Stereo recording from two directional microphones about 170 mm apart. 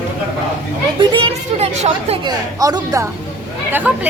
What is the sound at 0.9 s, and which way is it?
Speech, 30° right (ahead or behind).